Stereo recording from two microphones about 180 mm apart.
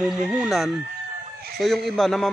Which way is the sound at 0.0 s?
Centre (ahead or behind).